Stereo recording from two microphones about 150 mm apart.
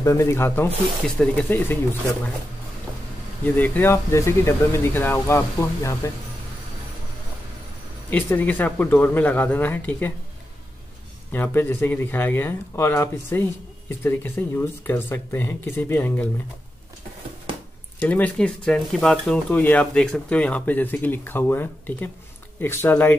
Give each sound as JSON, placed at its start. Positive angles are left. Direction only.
{"t": 0.0, "sound": "speech", "side_deg": 20}
{"t": 3.4, "sound": "speech", "side_deg": 10}
{"t": 8.1, "sound": "speech", "side_deg": 10}
{"t": 11.3, "sound": "speech", "side_deg": 15}
{"t": 18.0, "sound": "speech", "side_deg": 10}